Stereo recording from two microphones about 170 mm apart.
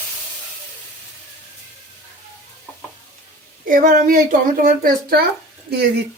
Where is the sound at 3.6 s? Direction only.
55° right (ahead or behind).